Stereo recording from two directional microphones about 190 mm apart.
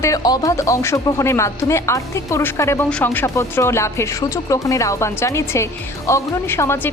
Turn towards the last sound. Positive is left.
turn(degrees=15)  # may be behind; listen again after turning